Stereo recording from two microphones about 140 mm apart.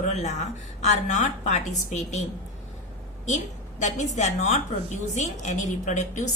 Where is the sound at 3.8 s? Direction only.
60° left (ahead or behind).